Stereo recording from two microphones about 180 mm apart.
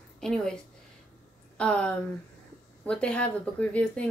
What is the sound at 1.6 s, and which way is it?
A woman's voice, 5° left (ahead or behind).